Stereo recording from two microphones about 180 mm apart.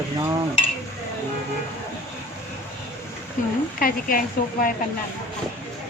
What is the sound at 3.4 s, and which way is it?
Speech, 45° left (ahead or behind).